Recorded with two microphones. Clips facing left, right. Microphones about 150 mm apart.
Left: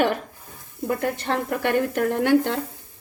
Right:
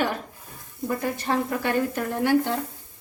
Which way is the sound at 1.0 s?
60° left (ahead or behind).